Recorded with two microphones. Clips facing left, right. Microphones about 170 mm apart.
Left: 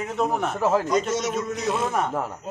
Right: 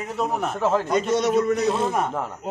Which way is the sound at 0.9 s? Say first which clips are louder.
Right 3 dB; 60° right (ahead or behind).